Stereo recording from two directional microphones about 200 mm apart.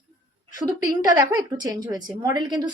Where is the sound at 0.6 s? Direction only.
15° right (ahead or behind).